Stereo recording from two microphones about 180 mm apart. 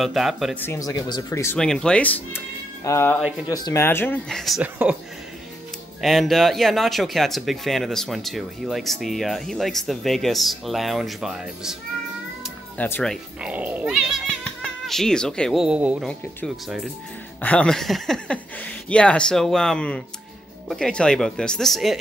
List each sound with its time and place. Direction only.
0.0 s speech: centre (ahead or behind)
0.6 s speech: 15° left (ahead or behind)
1.6 s speech: 5° left (ahead or behind)
5.9 s speech: centre (ahead or behind)
12.7 s speech: 10° left (ahead or behind)
13.5 s speech: 10° right (ahead or behind)